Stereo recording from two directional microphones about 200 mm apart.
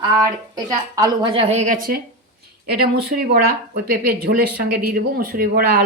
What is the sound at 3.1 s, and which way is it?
Speech, 50° right (ahead or behind).